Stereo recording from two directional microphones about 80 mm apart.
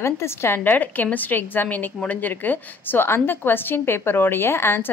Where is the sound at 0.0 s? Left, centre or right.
Left.